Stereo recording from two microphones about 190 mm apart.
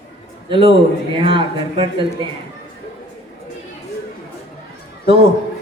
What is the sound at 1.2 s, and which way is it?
Speech, 30° right (ahead or behind).